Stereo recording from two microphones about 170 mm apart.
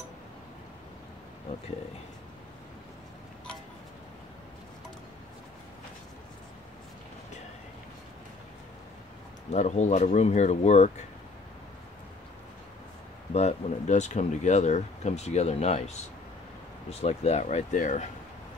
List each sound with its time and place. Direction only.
9.5 s speech: 40° left (ahead or behind)
13.3 s speech: 40° left (ahead or behind)